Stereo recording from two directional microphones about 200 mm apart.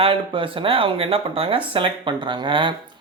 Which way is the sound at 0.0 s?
25° right (ahead or behind).